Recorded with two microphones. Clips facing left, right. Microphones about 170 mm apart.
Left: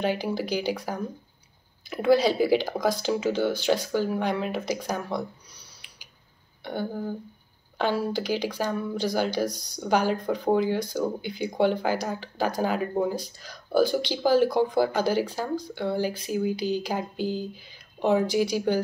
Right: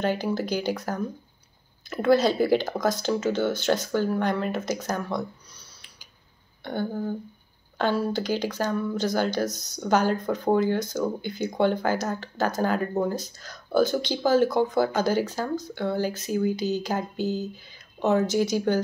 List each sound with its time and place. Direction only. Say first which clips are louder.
0.0 s speech: right 1 dB; 10° left (ahead or behind)
4.6 s a sound: right 1 dB; 10° left (ahead or behind)
6.6 s speech: right 2 dB; 10° left (ahead or behind)
16.5 s speech: even; 45° right (ahead or behind)
16.8 s speech: right 1 dB; 10° left (ahead or behind)